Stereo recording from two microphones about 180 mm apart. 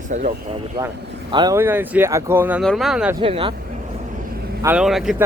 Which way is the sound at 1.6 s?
10° right (ahead or behind).